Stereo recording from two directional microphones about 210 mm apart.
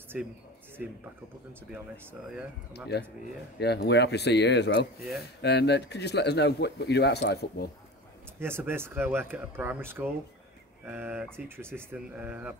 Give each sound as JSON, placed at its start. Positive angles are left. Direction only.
{"t": 2.9, "sound": "speech", "side_deg": 50}
{"t": 8.4, "sound": "speech", "side_deg": -10}